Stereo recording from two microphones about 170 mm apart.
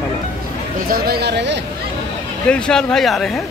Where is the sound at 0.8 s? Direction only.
65° right (ahead or behind); by 1.6 s 90° right.